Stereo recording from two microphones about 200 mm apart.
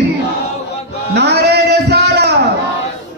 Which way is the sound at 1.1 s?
55° right (ahead or behind).